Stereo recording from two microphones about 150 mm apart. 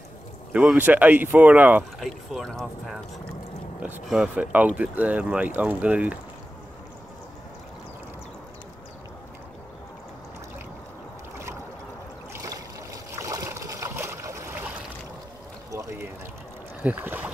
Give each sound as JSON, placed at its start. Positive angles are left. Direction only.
{"t": 0.5, "sound": "speech", "side_deg": -10}
{"t": 2.0, "sound": "speech", "side_deg": 0}
{"t": 4.1, "sound": "speech", "side_deg": -5}
{"t": 12.3, "sound": "a sound", "side_deg": -20}
{"t": 16.8, "sound": "speech", "side_deg": -10}